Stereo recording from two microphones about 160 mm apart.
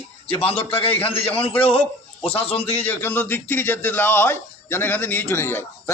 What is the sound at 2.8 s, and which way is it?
Speech, 15° left (ahead or behind).